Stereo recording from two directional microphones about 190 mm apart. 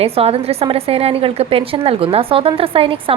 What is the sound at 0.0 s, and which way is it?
A woman's voice, 30° right (ahead or behind).